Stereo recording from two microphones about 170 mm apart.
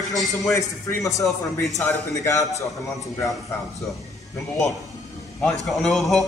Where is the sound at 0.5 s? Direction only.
20° left (ahead or behind).